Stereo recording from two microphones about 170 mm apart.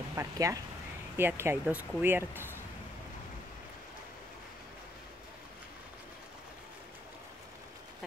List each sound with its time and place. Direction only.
0.1 s speech: 15° right (ahead or behind)